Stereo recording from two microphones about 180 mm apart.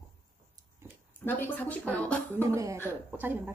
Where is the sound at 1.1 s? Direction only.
10° left (ahead or behind).